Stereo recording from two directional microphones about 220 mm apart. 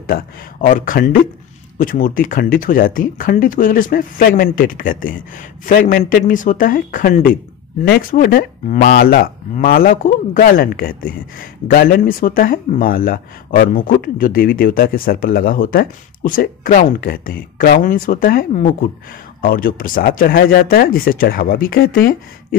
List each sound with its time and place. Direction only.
0.0 s speech: 40° left (ahead or behind)